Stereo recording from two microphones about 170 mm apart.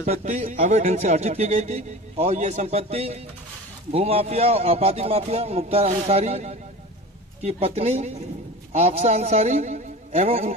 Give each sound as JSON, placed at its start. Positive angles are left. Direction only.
{"t": 0.1, "sound": "speech", "side_deg": -40}